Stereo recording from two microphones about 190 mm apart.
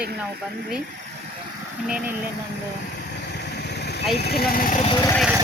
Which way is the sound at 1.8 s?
5° right (ahead or behind).